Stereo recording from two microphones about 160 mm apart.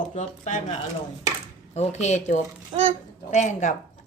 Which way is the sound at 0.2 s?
50° left (ahead or behind).